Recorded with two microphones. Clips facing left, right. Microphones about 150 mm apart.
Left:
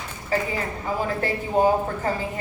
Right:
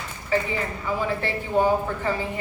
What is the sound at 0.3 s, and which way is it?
Speech, 40° left (ahead or behind).